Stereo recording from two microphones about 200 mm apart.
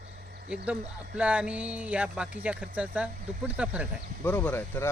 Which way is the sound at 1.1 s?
5° right (ahead or behind).